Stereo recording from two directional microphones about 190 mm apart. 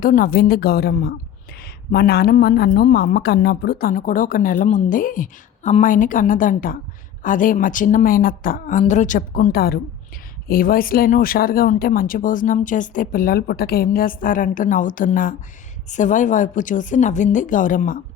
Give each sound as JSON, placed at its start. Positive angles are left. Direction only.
{"t": 0.0, "sound": "a woman's voice", "side_deg": 45}